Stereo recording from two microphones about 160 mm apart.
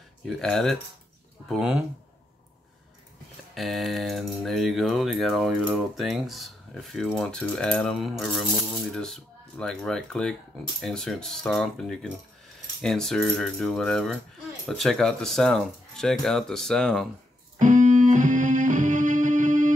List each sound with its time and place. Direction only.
0.4 s speech: centre (ahead or behind)
3.5 s speech: centre (ahead or behind)
17.6 s music: 55° right (ahead or behind)